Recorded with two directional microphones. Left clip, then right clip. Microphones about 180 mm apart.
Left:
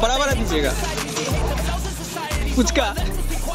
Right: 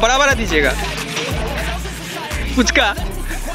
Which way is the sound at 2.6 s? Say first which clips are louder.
Right 6 dB; 5° left (ahead or behind).